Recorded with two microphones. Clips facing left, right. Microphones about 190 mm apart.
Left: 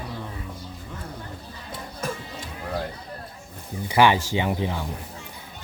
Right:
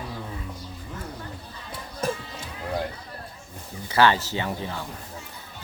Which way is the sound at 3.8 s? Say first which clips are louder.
Left 2 dB; 15° left (ahead or behind).